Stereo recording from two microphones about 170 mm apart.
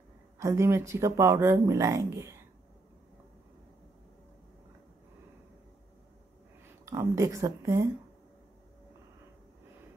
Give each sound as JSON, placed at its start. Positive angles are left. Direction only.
{"t": 0.4, "sound": "speech", "side_deg": -15}
{"t": 6.9, "sound": "speech", "side_deg": -20}